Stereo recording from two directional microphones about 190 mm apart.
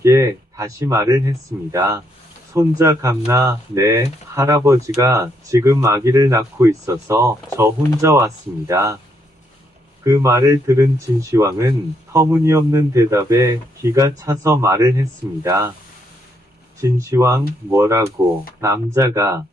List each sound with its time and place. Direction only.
0.0 s speech: 15° right (ahead or behind)
10.0 s speech: 15° right (ahead or behind)
16.8 s speech: 15° right (ahead or behind)